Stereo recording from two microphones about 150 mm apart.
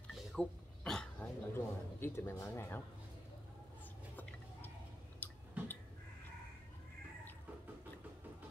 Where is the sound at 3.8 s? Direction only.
10° left (ahead or behind).